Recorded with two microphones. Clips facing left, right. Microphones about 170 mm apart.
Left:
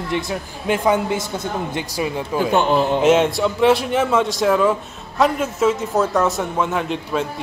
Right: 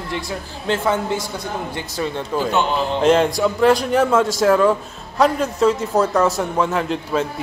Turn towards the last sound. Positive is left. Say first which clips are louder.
# right 1 dB
turn(degrees=0)  # may be behind; listen again after turning